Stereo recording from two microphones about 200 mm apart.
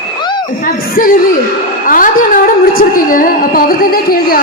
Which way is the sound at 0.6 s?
45° left (ahead or behind).